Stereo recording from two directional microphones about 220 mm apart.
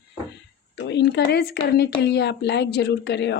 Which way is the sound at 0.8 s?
50° left (ahead or behind).